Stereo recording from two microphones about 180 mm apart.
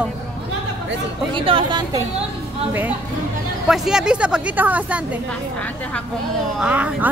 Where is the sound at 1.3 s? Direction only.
30° right (ahead or behind).